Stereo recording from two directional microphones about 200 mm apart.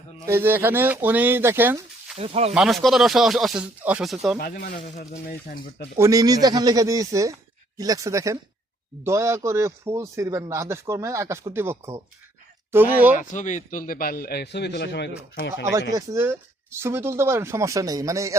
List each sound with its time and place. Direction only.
0.3 s a man's voice: 10° right (ahead or behind)
2.1 s speech: 30° right (ahead or behind)
2.5 s speech: centre (ahead or behind)
4.4 s a man's voice: 45° left (ahead or behind)
6.0 s a man's voice: 15° right (ahead or behind)
13.1 s a man's voice: 40° left (ahead or behind); by 15.6 s 60° left (ahead or behind)
15.9 s a man's voice: 15° right (ahead or behind)